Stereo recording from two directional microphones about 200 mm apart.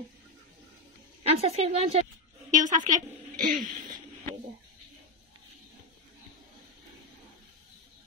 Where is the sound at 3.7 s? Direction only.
40° right (ahead or behind).